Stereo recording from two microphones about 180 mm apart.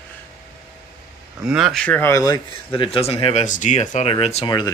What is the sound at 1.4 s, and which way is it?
Speech, centre (ahead or behind).